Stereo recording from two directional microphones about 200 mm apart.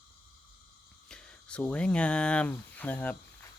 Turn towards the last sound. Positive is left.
turn(degrees=10)  # may be behind; listen again after turning